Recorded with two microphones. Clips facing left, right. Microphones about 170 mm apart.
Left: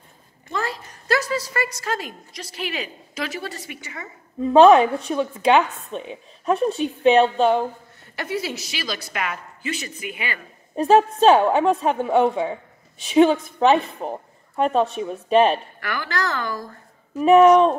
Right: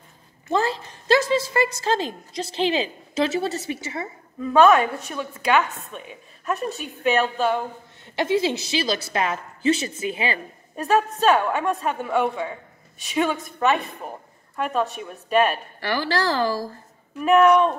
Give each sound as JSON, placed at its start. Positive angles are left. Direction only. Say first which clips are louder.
{"t": 0.5, "sound": "a woman's voice", "louder": "right 5 dB", "side_deg": -30}
{"t": 4.4, "sound": "a woman's voice", "louder": "left 4 dB", "side_deg": 30}
{"t": 8.2, "sound": "a woman's voice", "louder": "right 6 dB", "side_deg": -25}
{"t": 10.8, "sound": "a woman's voice", "louder": "left 5 dB", "side_deg": 30}
{"t": 15.8, "sound": "a woman's voice", "louder": "right 3 dB", "side_deg": -30}
{"t": 17.2, "sound": "a woman's voice", "louder": "left 4 dB", "side_deg": 30}